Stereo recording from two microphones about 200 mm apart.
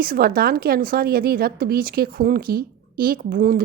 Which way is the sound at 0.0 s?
50° right (ahead or behind).